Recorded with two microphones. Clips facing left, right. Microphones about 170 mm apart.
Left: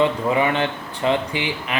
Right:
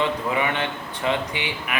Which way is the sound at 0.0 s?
25° left (ahead or behind).